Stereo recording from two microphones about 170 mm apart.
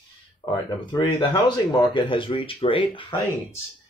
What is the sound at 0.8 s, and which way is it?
Speech, 25° left (ahead or behind).